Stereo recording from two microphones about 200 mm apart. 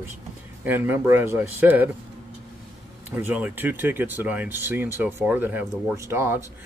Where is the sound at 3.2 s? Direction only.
10° right (ahead or behind).